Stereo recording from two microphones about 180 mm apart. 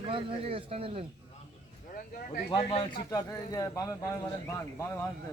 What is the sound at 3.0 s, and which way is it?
Speech, 20° left (ahead or behind).